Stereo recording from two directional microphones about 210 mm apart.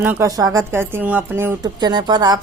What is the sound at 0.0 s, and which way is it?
A woman's voice, 10° right (ahead or behind).